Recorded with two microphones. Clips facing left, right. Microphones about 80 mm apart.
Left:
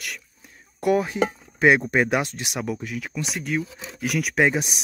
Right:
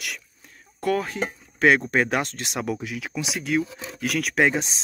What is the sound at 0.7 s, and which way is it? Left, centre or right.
Speech, centre.